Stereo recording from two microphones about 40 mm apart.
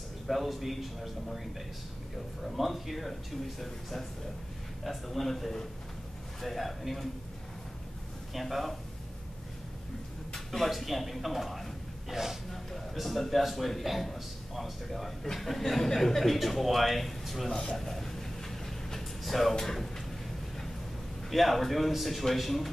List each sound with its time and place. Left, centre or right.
0.3 s a man's voice: centre
8.3 s a man's voice: centre
10.3 s a sound: centre
10.7 s a man's voice: centre
12.4 s a man's voice: centre
17.5 s speech: left
17.7 s speech: centre
18.9 s a sound: centre
19.5 s speech: centre
21.3 s a man's voice: centre